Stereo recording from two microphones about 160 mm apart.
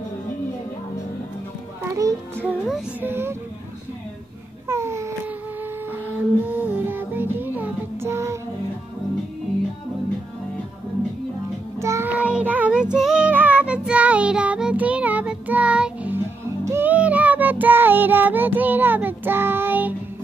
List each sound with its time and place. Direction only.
2.4 s speech: 5° right (ahead or behind)
4.6 s babbling: 15° right (ahead or behind)
6.1 s music: 10° right (ahead or behind)
11.8 s child singing: 15° right (ahead or behind)
16.6 s music: 15° right (ahead or behind)